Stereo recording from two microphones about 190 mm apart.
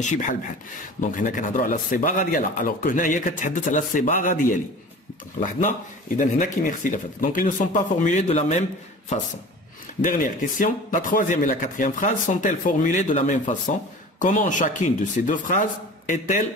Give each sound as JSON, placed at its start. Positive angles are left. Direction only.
{"t": 0.0, "sound": "speech", "side_deg": 40}
{"t": 10.0, "sound": "speech", "side_deg": 45}